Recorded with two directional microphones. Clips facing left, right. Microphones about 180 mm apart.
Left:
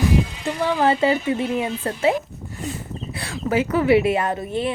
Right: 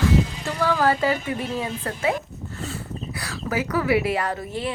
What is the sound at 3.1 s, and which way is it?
A woman's voice, 25° left (ahead or behind).